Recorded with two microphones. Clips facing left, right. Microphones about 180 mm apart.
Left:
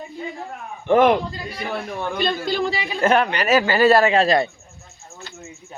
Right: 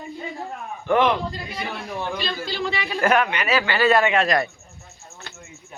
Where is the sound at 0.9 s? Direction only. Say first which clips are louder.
Left 5 dB; 50° left (ahead or behind).